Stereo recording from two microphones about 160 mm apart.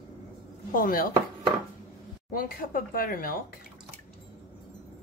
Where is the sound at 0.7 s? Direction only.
60° left (ahead or behind).